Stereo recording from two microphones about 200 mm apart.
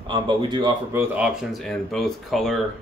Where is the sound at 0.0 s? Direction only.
25° right (ahead or behind).